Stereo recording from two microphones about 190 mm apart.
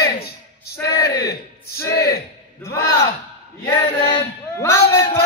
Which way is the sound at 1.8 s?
55° left (ahead or behind).